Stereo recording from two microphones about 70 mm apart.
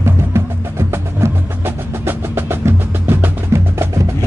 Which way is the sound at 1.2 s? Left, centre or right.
Right.